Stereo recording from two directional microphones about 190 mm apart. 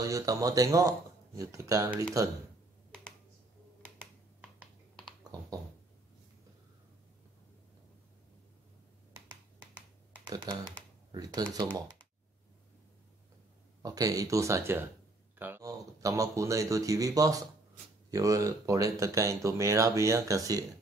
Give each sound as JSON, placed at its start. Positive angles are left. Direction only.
{"t": 0.0, "sound": "speech", "side_deg": -20}
{"t": 10.2, "sound": "speech", "side_deg": -25}
{"t": 13.8, "sound": "speech", "side_deg": -20}